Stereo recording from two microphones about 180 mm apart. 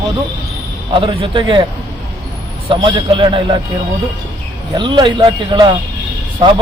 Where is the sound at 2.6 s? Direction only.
25° right (ahead or behind).